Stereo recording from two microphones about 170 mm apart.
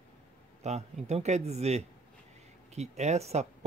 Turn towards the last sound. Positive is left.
turn(degrees=-40)  # may be behind; listen again after turning